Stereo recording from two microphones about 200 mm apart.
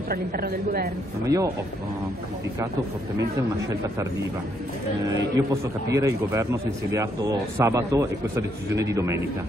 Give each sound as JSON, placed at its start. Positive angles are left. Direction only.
{"t": 0.1, "sound": "a woman's voice", "side_deg": -50}
{"t": 1.2, "sound": "a man's voice", "side_deg": -15}
{"t": 5.0, "sound": "a man's voice", "side_deg": -15}